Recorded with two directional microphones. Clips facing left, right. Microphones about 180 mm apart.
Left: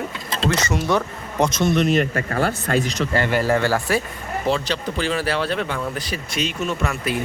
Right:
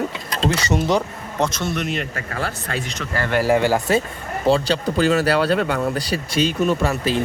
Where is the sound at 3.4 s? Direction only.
15° right (ahead or behind).